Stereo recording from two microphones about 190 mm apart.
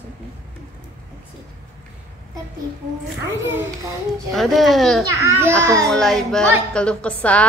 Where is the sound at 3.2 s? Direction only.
10° right (ahead or behind).